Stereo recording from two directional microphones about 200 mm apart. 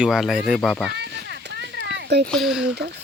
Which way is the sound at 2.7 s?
55° right (ahead or behind).